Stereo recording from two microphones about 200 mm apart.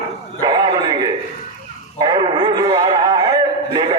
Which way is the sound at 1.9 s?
20° right (ahead or behind).